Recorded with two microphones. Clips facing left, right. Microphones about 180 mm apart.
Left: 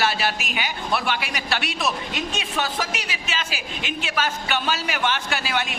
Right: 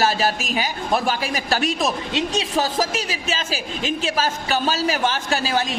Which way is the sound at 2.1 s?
30° right (ahead or behind).